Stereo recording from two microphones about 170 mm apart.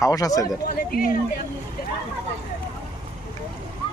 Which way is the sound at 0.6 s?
55° left (ahead or behind).